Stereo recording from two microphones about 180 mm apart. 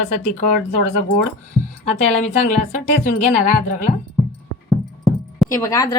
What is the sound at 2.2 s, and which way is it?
Speech, 45° left (ahead or behind).